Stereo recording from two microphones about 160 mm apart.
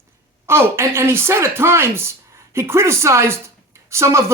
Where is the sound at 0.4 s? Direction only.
15° right (ahead or behind).